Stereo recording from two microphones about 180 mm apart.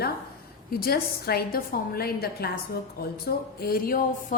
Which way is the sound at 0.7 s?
55° left (ahead or behind).